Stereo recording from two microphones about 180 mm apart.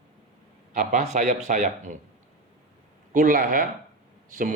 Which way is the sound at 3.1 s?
50° right (ahead or behind).